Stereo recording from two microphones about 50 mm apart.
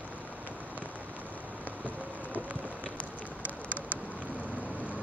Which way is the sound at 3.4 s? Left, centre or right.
Right.